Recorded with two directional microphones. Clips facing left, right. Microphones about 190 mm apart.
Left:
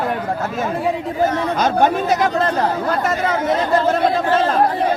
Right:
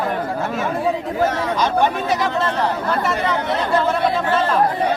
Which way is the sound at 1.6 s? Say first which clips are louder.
Left 3 dB; 45° left (ahead or behind).